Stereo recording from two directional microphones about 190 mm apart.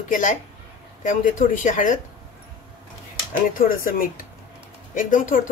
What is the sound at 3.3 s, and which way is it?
Speech, 50° left (ahead or behind).